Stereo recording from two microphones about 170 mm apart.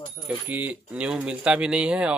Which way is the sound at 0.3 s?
10° right (ahead or behind).